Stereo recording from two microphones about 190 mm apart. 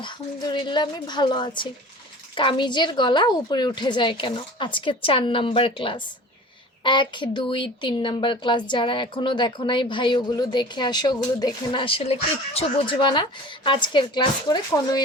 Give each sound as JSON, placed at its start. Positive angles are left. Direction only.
{"t": 0.0, "sound": "a woman's voice", "side_deg": 25}